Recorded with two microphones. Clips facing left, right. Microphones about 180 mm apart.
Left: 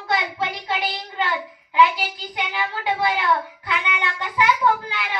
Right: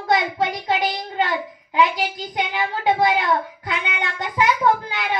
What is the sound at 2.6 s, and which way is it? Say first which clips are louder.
Speech: right 5 dB; 40° right (ahead or behind).